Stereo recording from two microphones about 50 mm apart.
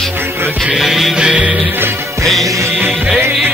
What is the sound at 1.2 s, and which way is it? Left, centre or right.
Music, right.